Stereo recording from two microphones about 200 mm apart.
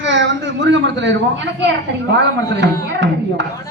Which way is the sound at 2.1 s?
60° right (ahead or behind).